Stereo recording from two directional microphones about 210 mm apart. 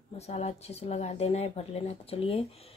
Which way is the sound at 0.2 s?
30° left (ahead or behind).